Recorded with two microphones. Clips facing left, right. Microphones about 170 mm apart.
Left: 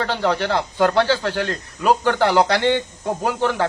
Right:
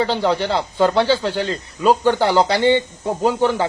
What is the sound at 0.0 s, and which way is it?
Speech, 15° right (ahead or behind).